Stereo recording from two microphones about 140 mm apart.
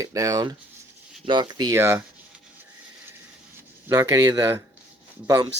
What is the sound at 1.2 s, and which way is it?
Speech, 35° right (ahead or behind).